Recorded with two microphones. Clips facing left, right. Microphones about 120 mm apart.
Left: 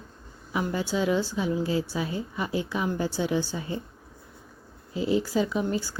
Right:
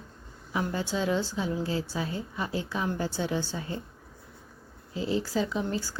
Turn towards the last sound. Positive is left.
turn(degrees=15)  # may be behind; listen again after turning